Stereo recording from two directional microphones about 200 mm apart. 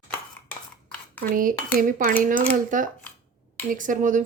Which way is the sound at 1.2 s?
45° right (ahead or behind).